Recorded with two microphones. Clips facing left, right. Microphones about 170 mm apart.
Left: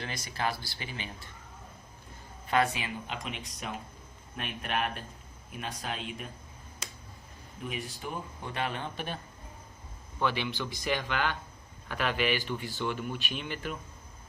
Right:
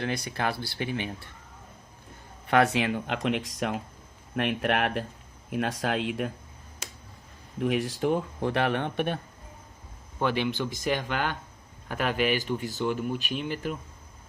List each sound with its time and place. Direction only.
0.0 s speech: 60° right (ahead or behind)
2.5 s speech: 70° right (ahead or behind)
7.6 s speech: 90° right; by 9.2 s 60° right (ahead or behind)
10.2 s speech: 50° right (ahead or behind)